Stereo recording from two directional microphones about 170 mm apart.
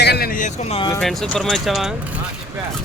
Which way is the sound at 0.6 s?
30° left (ahead or behind).